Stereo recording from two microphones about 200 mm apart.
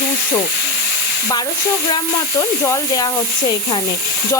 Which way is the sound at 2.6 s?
15° left (ahead or behind).